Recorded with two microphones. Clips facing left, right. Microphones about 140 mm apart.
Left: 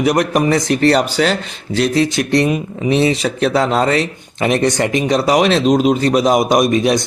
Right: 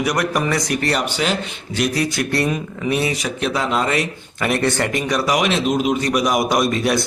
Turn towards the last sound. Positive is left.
turn(degrees=20)  # may be behind; listen again after turning